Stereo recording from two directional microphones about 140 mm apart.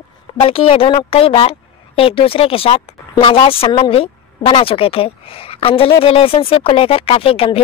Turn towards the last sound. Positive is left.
turn(degrees=40)  # may be behind; listen again after turning